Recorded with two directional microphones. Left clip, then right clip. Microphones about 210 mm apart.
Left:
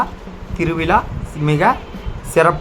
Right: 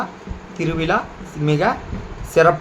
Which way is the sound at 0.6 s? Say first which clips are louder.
Left 4 dB; 15° left (ahead or behind).